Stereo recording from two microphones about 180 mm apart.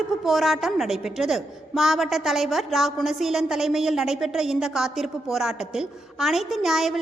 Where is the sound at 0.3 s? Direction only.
Centre (ahead or behind).